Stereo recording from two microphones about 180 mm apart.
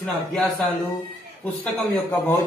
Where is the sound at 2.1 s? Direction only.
20° left (ahead or behind).